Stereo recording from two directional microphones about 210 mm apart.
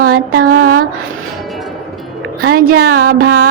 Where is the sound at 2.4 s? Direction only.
45° right (ahead or behind).